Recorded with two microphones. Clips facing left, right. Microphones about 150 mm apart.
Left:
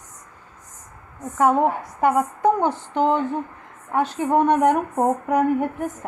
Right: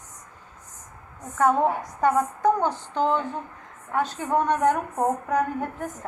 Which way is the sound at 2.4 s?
20° left (ahead or behind).